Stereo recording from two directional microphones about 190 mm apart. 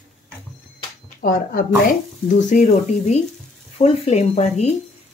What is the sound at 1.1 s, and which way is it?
Speech, 45° left (ahead or behind).